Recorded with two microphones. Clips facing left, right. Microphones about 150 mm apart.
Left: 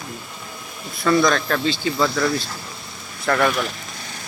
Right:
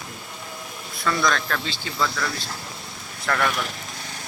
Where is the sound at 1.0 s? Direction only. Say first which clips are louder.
Left 6 dB; 20° left (ahead or behind).